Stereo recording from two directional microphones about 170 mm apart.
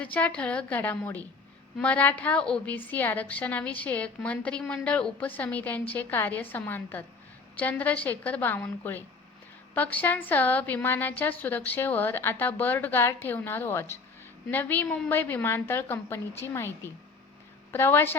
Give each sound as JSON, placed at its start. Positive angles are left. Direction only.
{"t": 0.0, "sound": "a woman's voice", "side_deg": 10}
{"t": 17.7, "sound": "a woman's voice", "side_deg": 15}